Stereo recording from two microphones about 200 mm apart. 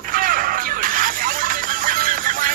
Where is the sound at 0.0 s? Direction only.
45° right (ahead or behind).